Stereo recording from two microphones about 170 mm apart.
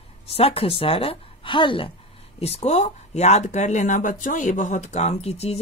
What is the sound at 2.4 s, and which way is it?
A woman's voice, 40° left (ahead or behind).